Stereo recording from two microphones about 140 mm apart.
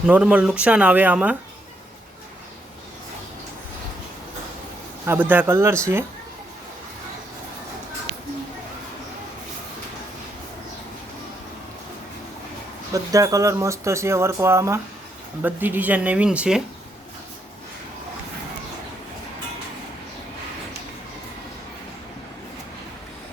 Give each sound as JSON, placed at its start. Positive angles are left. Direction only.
{"t": 0.0, "sound": "speech", "side_deg": -5}
{"t": 5.0, "sound": "speech", "side_deg": -15}
{"t": 12.9, "sound": "speech", "side_deg": -25}